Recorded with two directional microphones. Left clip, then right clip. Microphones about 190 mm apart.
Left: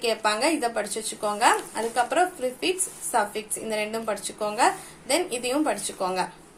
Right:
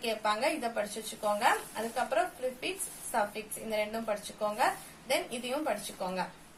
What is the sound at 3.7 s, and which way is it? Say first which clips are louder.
Speech: left 4 dB; 35° left (ahead or behind).